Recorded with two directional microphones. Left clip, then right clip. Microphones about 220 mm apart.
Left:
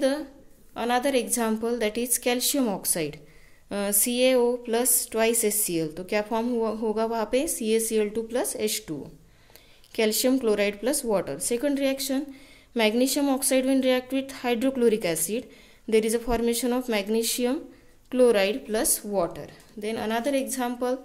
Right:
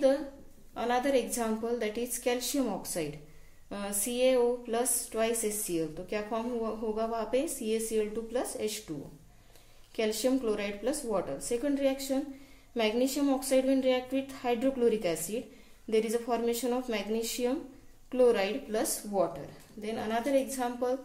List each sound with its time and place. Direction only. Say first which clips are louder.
0.7 s speech: left 4 dB; 35° left (ahead or behind)
9.9 s speech: left 6 dB; 40° left (ahead or behind)